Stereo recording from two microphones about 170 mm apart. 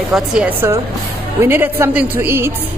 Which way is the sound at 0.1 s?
5° right (ahead or behind).